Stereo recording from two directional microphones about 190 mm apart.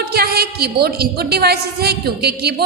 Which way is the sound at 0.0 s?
55° right (ahead or behind).